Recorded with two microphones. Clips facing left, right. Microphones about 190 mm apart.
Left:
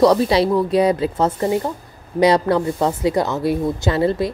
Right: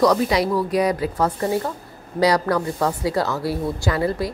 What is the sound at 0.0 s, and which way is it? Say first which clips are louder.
A woman's voice: left 4 dB; 30° left (ahead or behind).